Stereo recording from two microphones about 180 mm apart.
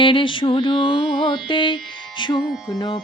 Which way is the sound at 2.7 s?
25° left (ahead or behind).